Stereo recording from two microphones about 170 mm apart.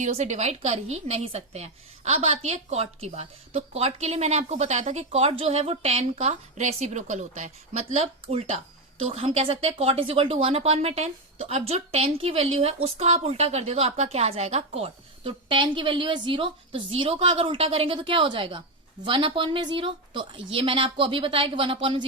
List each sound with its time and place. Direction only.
0.0 s a woman's voice: 40° right (ahead or behind)